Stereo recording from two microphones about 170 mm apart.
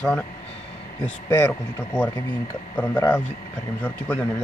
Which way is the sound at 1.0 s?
10° left (ahead or behind).